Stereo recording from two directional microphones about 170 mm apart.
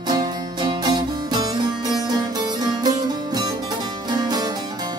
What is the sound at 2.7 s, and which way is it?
Music, 25° right (ahead or behind).